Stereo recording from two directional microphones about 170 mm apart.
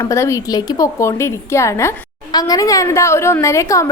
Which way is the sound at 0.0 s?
15° left (ahead or behind).